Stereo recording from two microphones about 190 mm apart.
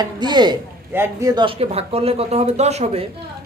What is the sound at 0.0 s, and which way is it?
A man's voice, 20° right (ahead or behind).